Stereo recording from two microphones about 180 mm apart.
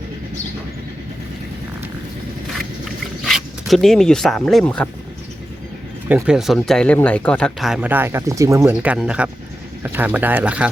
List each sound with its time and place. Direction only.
3.2 s speech: centre (ahead or behind)
6.1 s speech: 5° right (ahead or behind)